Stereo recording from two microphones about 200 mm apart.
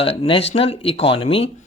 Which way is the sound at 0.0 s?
30° left (ahead or behind).